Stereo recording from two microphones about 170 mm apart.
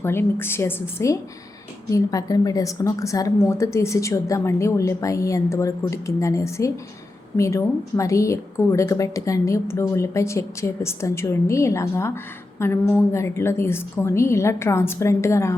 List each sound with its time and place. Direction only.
0.0 s a woman's voice: 15° left (ahead or behind)